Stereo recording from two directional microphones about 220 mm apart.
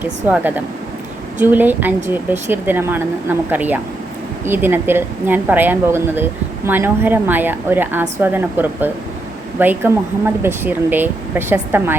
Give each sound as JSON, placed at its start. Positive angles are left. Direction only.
{"t": 0.0, "sound": "speech", "side_deg": -10}